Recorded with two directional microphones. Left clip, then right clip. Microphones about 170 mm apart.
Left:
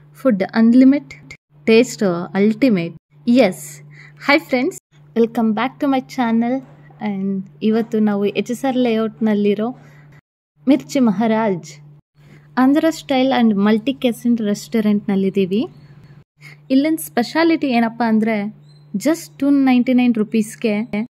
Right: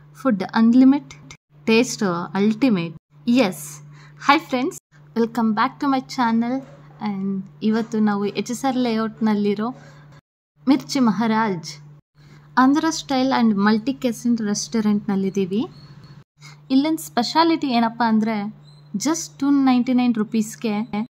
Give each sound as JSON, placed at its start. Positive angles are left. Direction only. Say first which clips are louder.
{"t": 0.2, "sound": "speech", "louder": "left 4 dB", "side_deg": 10}